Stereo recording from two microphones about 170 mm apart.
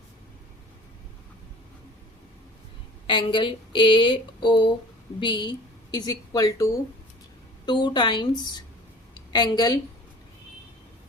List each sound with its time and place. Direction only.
3.1 s a woman's voice: 30° left (ahead or behind)